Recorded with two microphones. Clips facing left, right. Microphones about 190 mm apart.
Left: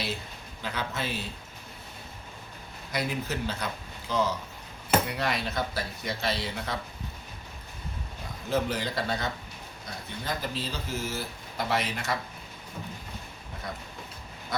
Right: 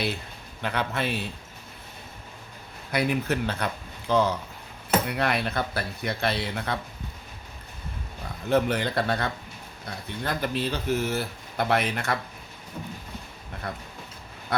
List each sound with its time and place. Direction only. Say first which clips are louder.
0.6 s speech: right 5 dB; 60° right (ahead or behind)
2.9 s speech: right 6 dB; 60° right (ahead or behind)
8.4 s speech: right 5 dB; 60° right (ahead or behind)
13.7 s speech: right 3 dB; 60° right (ahead or behind)